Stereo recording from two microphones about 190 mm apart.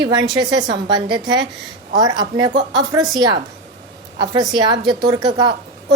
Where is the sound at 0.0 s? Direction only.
25° right (ahead or behind).